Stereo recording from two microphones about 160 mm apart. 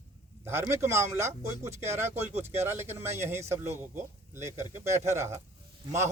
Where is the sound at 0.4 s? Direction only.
15° right (ahead or behind).